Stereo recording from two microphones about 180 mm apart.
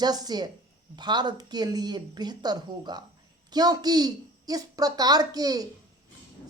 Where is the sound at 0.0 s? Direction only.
20° right (ahead or behind).